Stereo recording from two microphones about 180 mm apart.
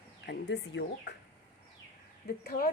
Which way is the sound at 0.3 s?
70° left (ahead or behind).